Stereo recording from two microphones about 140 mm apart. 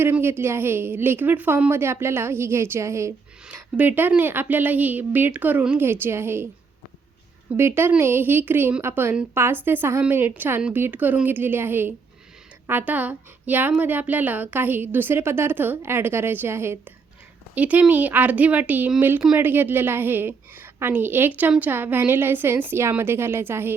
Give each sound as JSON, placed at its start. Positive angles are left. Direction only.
{"t": 0.0, "sound": "a woman's voice", "side_deg": -15}
{"t": 7.5, "sound": "a woman's voice", "side_deg": -15}